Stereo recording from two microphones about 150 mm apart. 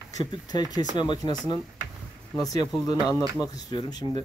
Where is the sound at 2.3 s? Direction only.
25° left (ahead or behind).